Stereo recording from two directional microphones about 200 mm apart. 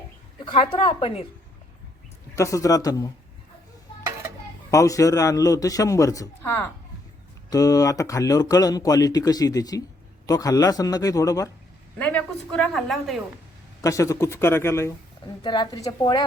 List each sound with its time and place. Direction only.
0.4 s a woman's voice: 25° left (ahead or behind)
2.3 s speech: 15° left (ahead or behind)
4.7 s speech: 15° left (ahead or behind)
11.9 s speech: 5° left (ahead or behind)
13.8 s a woman's voice: 15° left (ahead or behind)